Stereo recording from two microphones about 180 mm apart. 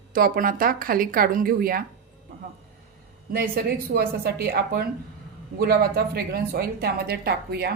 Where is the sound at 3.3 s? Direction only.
55° right (ahead or behind).